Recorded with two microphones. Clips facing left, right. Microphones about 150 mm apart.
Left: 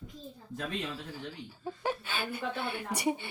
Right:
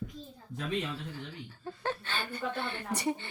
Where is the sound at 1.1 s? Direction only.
10° left (ahead or behind).